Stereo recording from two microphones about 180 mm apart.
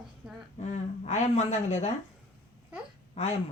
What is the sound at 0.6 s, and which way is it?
Speech, 40° left (ahead or behind).